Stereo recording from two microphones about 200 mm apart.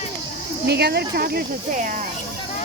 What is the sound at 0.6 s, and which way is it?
Speech, 55° right (ahead or behind).